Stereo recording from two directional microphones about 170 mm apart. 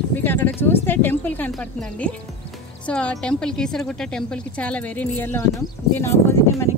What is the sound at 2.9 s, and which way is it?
A woman's voice, 5° left (ahead or behind).